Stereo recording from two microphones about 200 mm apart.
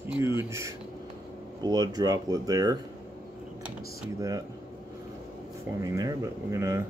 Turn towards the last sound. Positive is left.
turn(degrees=-15)  # may be behind; listen again after turning